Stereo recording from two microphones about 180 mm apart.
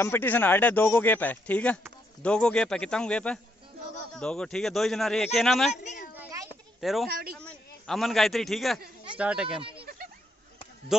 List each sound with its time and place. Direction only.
0.0 s a man's voice: 10° left (ahead or behind)
6.1 s a sound: 20° right (ahead or behind)
6.8 s speech: centre (ahead or behind)
7.1 s a man's voice: 55° right (ahead or behind)
7.3 s a man's voice: 5° left (ahead or behind)
9.6 s speech: 30° right (ahead or behind)
10.9 s a man's voice: 5° right (ahead or behind)